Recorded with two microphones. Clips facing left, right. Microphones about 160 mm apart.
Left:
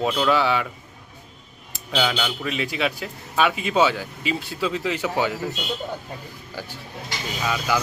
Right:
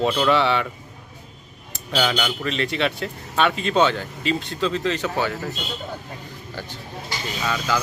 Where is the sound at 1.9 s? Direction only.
5° left (ahead or behind).